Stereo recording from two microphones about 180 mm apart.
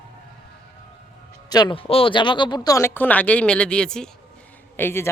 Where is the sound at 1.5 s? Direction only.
25° left (ahead or behind).